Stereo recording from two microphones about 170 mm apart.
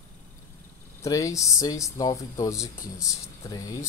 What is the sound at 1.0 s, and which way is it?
Speech, 20° left (ahead or behind).